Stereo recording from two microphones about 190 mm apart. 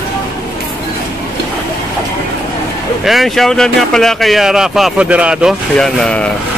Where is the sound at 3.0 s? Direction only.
Centre (ahead or behind).